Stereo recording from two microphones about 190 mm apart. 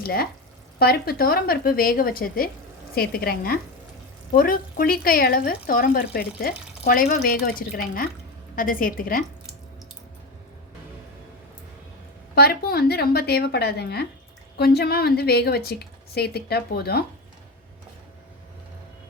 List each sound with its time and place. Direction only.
0.0 s speech: 50° left (ahead or behind)
12.3 s a woman's voice: 55° left (ahead or behind)